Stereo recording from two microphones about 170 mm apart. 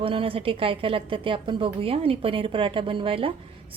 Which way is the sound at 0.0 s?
35° right (ahead or behind).